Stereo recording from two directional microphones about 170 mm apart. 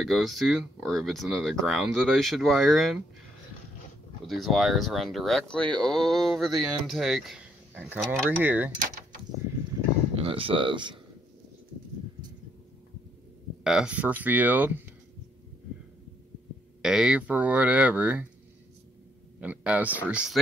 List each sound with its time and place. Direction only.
0.0 s speech: centre (ahead or behind)
4.3 s speech: centre (ahead or behind)
8.4 s speech: 10° right (ahead or behind)
10.2 s speech: 30° right (ahead or behind)
13.7 s speech: 5° right (ahead or behind)
16.8 s speech: 5° right (ahead or behind)
19.4 s speech: 10° right (ahead or behind)